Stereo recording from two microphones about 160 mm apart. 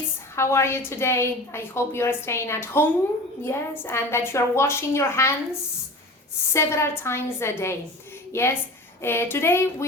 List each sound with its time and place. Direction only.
0.3 s a woman's voice: 15° left (ahead or behind)
6.5 s a woman's voice: 15° left (ahead or behind)